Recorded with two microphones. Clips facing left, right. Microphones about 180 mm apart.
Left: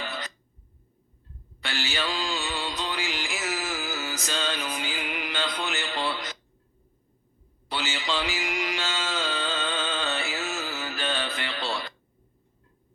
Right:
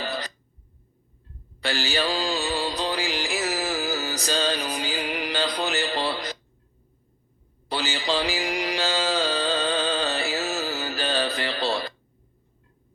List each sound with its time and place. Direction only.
0.0 s a sound: 35° right (ahead or behind)
1.6 s music: 35° right (ahead or behind)
7.7 s music: 35° right (ahead or behind)